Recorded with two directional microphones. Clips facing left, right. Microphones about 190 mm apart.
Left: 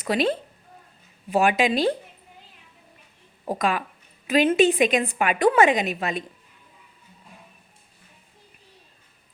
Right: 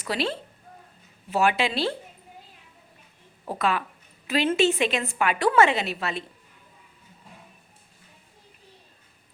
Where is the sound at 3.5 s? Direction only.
15° left (ahead or behind).